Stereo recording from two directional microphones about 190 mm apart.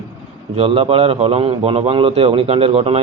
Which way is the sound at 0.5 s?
30° right (ahead or behind).